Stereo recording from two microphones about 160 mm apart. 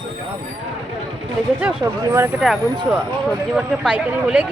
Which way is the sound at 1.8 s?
15° right (ahead or behind).